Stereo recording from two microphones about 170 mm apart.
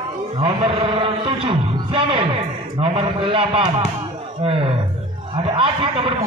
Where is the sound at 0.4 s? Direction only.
30° right (ahead or behind).